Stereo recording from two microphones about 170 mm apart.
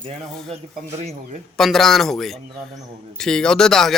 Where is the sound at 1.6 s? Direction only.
Centre (ahead or behind).